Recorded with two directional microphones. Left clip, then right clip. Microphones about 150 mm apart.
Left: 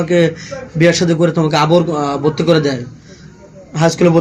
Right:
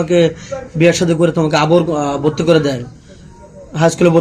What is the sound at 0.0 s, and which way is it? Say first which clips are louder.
A man's voice: right 1 dB; 40° right (ahead or behind).